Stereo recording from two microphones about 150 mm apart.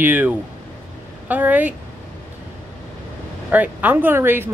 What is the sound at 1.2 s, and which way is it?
Speech, 10° right (ahead or behind).